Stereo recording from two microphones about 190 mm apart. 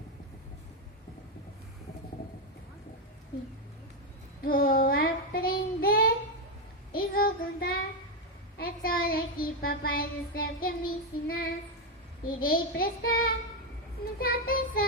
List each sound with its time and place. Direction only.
4.4 s child singing: 50° left (ahead or behind)